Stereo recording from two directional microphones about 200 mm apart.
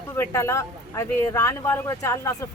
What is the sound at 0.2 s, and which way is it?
Speech, 15° left (ahead or behind).